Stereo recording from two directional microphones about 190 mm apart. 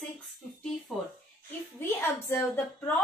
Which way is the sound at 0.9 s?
Centre (ahead or behind).